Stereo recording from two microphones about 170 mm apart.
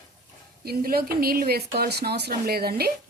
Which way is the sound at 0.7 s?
60° right (ahead or behind).